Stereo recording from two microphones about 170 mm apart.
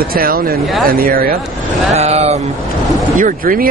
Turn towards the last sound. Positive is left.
turn(degrees=-55)  # may be behind; listen again after turning